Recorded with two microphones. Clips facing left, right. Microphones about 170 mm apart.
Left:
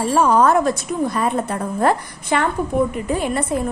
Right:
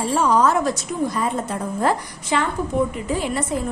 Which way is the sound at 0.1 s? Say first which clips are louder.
Left 3 dB; 55° left (ahead or behind).